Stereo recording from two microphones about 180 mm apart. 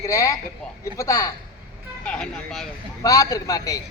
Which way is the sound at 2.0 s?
5° left (ahead or behind).